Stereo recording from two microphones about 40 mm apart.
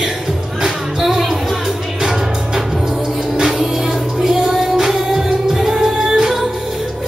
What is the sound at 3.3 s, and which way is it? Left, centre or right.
Music, centre.